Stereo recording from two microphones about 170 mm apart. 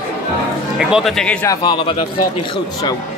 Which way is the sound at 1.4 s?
25° left (ahead or behind).